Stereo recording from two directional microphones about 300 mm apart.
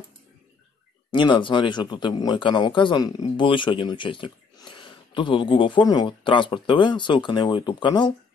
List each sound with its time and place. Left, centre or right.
1.1 s speech: centre